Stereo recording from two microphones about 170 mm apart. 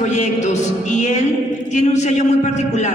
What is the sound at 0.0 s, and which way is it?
A man's voice, 45° left (ahead or behind).